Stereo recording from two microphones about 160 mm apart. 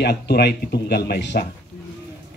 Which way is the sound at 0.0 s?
90° left.